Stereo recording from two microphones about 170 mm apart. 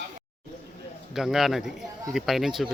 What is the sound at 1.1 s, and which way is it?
A man's voice, centre (ahead or behind).